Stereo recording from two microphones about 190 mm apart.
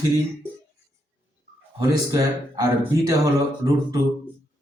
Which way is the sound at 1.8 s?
20° right (ahead or behind).